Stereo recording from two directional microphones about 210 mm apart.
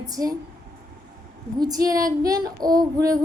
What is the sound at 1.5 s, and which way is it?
Speech, 20° right (ahead or behind).